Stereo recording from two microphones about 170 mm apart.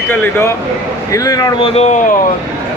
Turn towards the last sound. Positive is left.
turn(degrees=40)  # may be behind; listen again after turning